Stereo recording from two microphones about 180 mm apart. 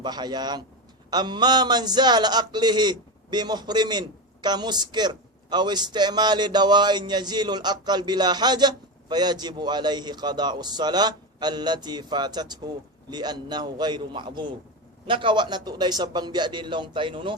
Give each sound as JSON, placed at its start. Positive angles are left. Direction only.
{"t": 0.0, "sound": "a man's voice", "side_deg": -25}